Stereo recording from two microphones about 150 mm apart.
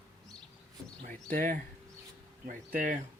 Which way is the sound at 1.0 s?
65° right (ahead or behind).